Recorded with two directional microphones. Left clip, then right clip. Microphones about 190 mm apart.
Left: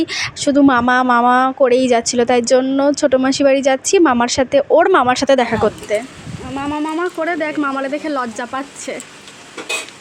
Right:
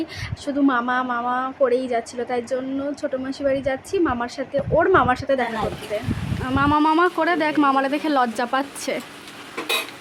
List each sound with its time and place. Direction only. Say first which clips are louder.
0.0 s speech: left 11 dB; 45° left (ahead or behind)
5.9 s speech: left 8 dB; 40° left (ahead or behind)
6.5 s speech: right 3 dB; 35° right (ahead or behind)
7.2 s speech: left 1 dB; 5° right (ahead or behind)